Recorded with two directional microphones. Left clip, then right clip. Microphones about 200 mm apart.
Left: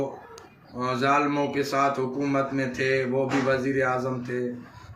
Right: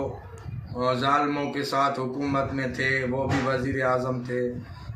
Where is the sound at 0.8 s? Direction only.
15° right (ahead or behind).